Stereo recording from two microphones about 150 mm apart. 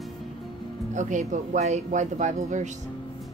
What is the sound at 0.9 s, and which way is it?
Speech, 55° right (ahead or behind).